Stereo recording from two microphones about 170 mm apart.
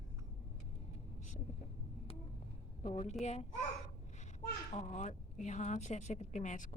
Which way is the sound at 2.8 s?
40° left (ahead or behind).